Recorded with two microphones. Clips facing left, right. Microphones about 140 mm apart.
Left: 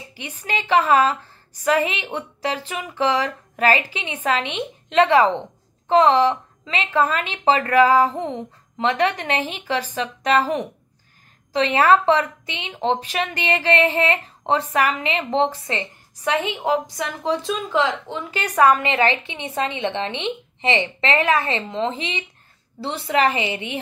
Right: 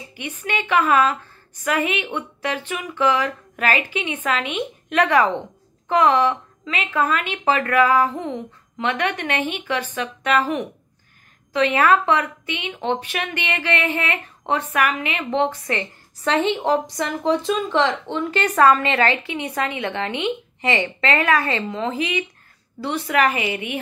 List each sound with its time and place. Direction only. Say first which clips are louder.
0.1 s a woman's voice: right 1 dB; 35° left (ahead or behind)